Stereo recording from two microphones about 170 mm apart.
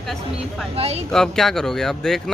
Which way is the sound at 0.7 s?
35° right (ahead or behind).